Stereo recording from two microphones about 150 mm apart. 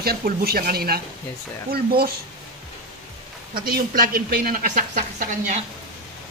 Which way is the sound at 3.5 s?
75° right (ahead or behind).